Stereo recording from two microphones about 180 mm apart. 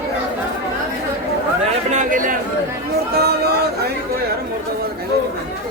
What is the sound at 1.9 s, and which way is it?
Chatter, 45° right (ahead or behind).